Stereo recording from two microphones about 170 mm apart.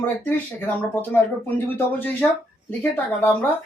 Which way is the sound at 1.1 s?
15° left (ahead or behind).